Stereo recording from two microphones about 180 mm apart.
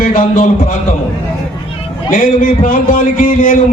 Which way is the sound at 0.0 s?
50° left (ahead or behind).